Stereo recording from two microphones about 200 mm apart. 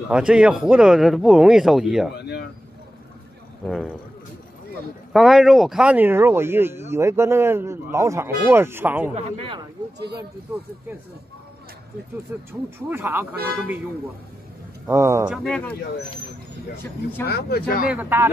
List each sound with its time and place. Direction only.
0.1 s speech: 5° right (ahead or behind)
2.1 s a sound: 55° left (ahead or behind)
3.6 s speech: centre (ahead or behind)
5.1 s speech: centre (ahead or behind)
9.1 s speech: 25° right (ahead or behind)
12.3 s speech: 10° right (ahead or behind)
14.9 s speech: 15° right (ahead or behind)
15.3 s speech: 5° left (ahead or behind)
17.3 s speech: 50° left (ahead or behind)
17.8 s speech: 10° right (ahead or behind)